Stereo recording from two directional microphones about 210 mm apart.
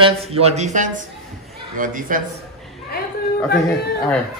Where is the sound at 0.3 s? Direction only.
30° right (ahead or behind).